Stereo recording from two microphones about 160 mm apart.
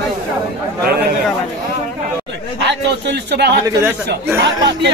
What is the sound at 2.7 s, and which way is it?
Speech, 90° right.